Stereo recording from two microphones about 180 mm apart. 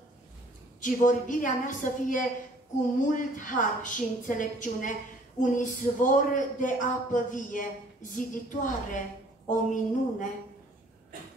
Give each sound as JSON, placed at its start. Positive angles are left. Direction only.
{"t": 0.7, "sound": "speech", "side_deg": 45}